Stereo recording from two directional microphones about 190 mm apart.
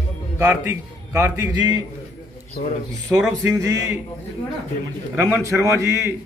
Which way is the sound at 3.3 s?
15° right (ahead or behind).